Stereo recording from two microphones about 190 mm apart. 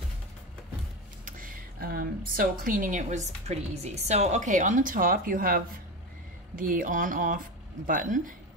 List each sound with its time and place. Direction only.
1.2 s speech: 45° right (ahead or behind)